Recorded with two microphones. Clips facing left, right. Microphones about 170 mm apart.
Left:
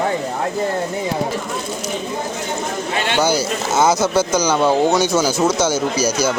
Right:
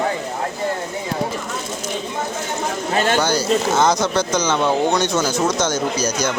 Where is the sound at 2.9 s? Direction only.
40° right (ahead or behind).